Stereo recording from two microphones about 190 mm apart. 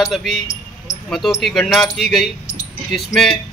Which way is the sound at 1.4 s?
Centre (ahead or behind).